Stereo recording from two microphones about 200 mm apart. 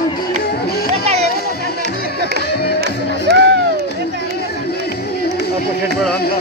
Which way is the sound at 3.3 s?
50° right (ahead or behind).